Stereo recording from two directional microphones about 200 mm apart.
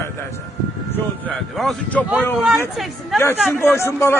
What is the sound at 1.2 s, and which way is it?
A man's voice, 5° left (ahead or behind).